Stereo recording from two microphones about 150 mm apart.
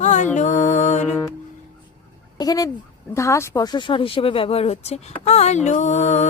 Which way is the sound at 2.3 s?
25° left (ahead or behind).